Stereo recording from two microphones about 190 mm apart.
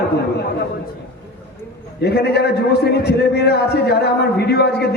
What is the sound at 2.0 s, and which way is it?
A man's voice, 60° left (ahead or behind).